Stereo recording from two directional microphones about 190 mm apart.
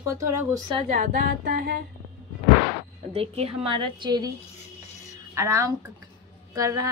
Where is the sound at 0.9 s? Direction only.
45° right (ahead or behind).